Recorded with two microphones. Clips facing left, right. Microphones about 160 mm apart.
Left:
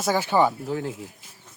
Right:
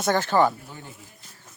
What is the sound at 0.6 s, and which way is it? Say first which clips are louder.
Speech: left 14 dB; 90° left.